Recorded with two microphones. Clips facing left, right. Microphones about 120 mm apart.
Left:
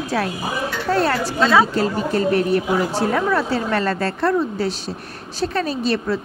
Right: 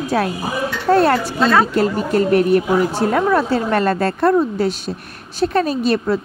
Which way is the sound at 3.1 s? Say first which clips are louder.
Right 3 dB; 40° right (ahead or behind).